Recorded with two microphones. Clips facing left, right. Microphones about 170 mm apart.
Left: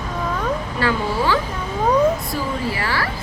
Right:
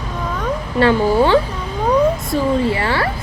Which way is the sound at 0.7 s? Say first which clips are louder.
Right 11 dB; 25° right (ahead or behind).